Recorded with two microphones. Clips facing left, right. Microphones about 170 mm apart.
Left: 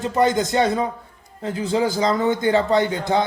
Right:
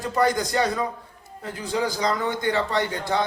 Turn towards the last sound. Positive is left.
turn(degrees=20)  # may be behind; listen again after turning